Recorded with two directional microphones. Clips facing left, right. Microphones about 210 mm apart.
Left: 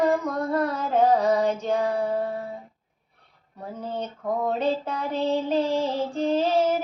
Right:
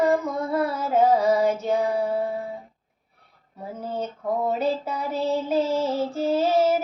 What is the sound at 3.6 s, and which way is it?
Female singing, 5° right (ahead or behind).